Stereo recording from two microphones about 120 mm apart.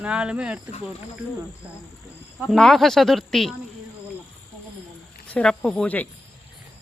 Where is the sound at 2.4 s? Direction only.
5° left (ahead or behind).